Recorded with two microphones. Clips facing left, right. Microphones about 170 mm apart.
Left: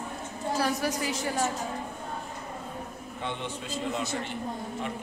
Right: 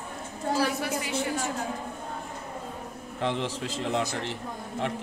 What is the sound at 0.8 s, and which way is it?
Speech, 40° left (ahead or behind).